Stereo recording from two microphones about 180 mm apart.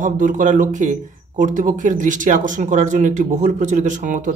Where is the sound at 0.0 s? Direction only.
45° right (ahead or behind).